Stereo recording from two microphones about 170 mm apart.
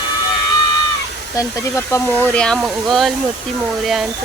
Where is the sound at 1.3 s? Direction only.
20° left (ahead or behind); by 3.1 s centre (ahead or behind).